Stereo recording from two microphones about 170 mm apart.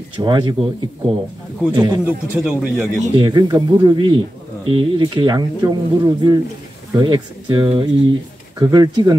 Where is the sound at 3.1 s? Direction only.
25° right (ahead or behind).